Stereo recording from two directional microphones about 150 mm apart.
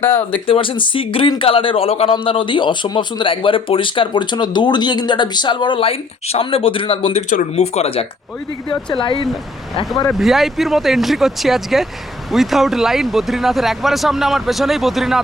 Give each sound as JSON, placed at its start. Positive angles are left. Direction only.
{"t": 0.4, "sound": "speech", "side_deg": 35}
{"t": 7.3, "sound": "speech", "side_deg": 50}
{"t": 8.7, "sound": "speech", "side_deg": 30}
{"t": 10.1, "sound": "speech", "side_deg": 0}